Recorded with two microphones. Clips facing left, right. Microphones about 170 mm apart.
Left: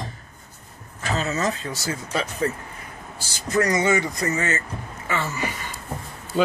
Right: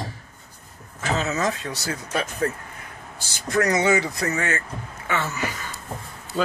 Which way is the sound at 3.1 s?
Centre (ahead or behind).